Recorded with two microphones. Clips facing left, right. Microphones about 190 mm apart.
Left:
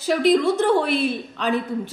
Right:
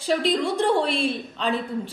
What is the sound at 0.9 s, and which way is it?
Speech, 30° right (ahead or behind).